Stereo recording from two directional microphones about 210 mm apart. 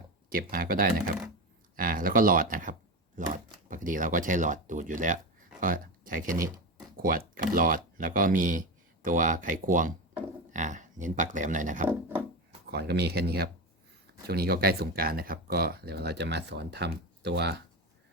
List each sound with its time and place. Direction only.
0.3 s speech: 45° right (ahead or behind)
11.9 s wood: 5° right (ahead or behind)
12.7 s speech: 50° right (ahead or behind)